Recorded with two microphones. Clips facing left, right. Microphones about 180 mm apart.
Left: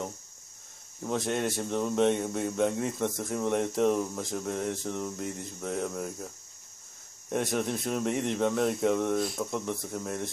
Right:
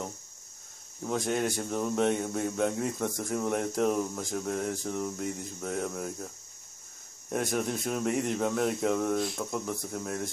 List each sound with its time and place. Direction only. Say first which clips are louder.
1.0 s speech: even; centre (ahead or behind)